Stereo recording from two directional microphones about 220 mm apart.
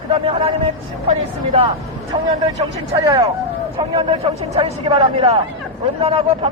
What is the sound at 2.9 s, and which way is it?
A man's voice, 15° right (ahead or behind).